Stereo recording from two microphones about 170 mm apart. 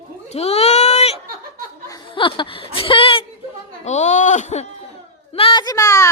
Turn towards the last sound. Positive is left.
turn(degrees=20)  # may be behind; listen again after turning